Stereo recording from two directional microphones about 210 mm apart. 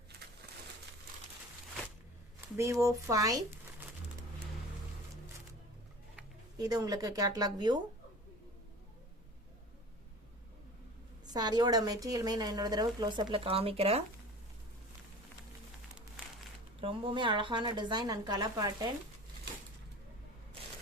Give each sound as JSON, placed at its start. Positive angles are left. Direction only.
{"t": 2.6, "sound": "speech", "side_deg": -15}
{"t": 6.6, "sound": "a woman's voice", "side_deg": -20}
{"t": 11.3, "sound": "a woman's voice", "side_deg": -20}
{"t": 16.8, "sound": "a woman's voice", "side_deg": -25}